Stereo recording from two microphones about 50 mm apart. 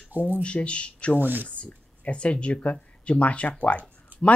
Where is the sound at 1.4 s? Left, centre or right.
Left.